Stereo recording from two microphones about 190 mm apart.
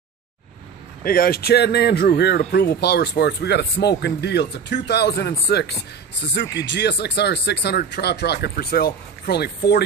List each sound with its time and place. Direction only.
1.0 s speech: 50° left (ahead or behind)